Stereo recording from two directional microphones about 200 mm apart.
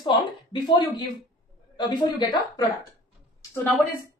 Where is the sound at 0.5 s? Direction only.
20° left (ahead or behind).